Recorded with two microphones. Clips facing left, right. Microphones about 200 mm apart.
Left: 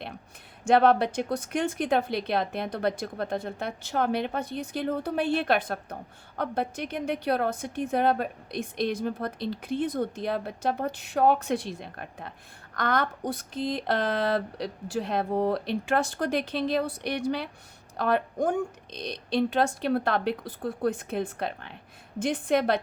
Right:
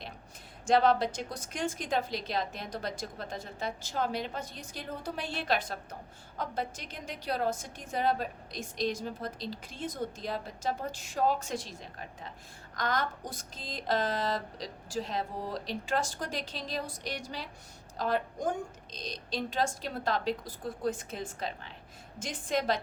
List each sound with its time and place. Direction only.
0.6 s a woman's voice: 60° left (ahead or behind)